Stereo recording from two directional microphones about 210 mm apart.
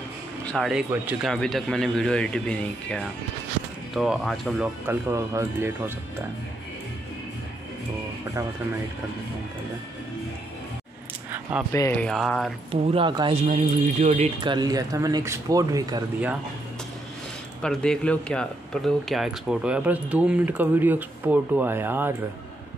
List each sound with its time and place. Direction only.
0.5 s a man's voice: centre (ahead or behind)
4.8 s speech: 10° right (ahead or behind)
11.7 s a man's voice: 10° left (ahead or behind)
12.8 s speech: 25° right (ahead or behind)
13.5 s speech: 35° right (ahead or behind); by 16.0 s 15° right (ahead or behind)
17.6 s speech: 5° left (ahead or behind)